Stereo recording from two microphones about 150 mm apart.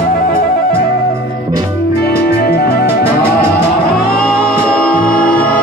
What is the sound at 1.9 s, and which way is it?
Music, 90° left.